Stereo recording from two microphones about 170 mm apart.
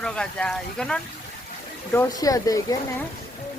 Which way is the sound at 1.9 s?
20° left (ahead or behind).